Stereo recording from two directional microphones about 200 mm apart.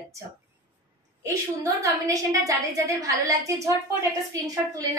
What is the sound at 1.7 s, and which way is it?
A woman's voice, 15° right (ahead or behind).